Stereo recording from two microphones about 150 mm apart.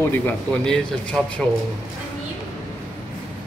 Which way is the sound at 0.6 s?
5° left (ahead or behind).